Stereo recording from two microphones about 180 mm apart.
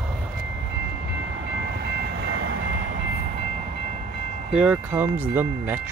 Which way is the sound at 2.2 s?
65° right (ahead or behind).